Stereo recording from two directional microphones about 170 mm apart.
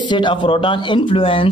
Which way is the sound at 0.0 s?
25° left (ahead or behind).